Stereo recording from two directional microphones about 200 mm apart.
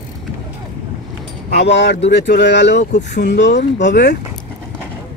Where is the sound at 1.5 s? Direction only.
60° left (ahead or behind).